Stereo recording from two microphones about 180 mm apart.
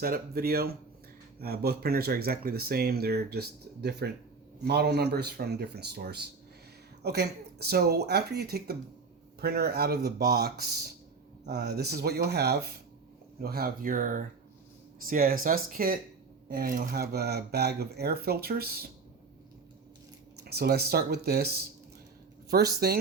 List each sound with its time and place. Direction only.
0.0 s speech: 55° right (ahead or behind)
20.4 s speech: 60° right (ahead or behind)